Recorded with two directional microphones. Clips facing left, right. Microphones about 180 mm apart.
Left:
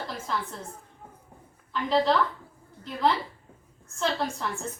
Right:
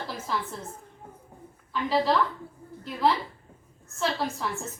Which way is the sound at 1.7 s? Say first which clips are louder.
Left 1 dB; 5° right (ahead or behind).